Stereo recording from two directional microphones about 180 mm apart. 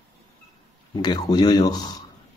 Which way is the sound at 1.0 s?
25° left (ahead or behind).